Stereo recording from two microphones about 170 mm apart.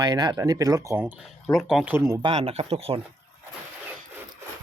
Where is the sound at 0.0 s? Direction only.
25° right (ahead or behind).